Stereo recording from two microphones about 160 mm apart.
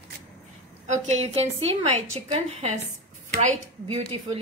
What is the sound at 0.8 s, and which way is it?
A woman's voice, 50° right (ahead or behind).